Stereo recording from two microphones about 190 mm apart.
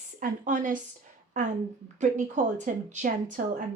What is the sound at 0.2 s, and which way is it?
Speech, 40° right (ahead or behind).